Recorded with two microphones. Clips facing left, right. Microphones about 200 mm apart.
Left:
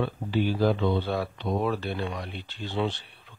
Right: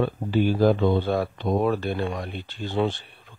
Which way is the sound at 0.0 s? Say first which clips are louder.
Right 4 dB; 45° right (ahead or behind).